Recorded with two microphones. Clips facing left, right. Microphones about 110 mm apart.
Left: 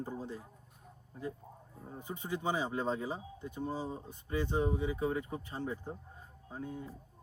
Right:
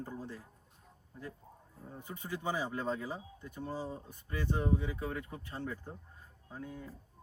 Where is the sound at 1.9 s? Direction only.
20° left (ahead or behind).